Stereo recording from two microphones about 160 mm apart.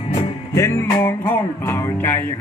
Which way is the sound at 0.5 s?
15° left (ahead or behind).